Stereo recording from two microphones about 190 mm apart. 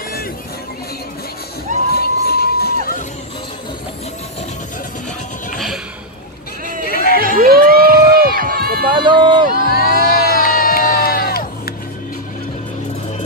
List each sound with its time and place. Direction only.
1.9 s crowd: 55° left (ahead or behind)
6.8 s run: 50° left (ahead or behind)
7.3 s run: 50° right (ahead or behind)
8.9 s run: 25° right (ahead or behind)
9.6 s crowd: 50° left (ahead or behind)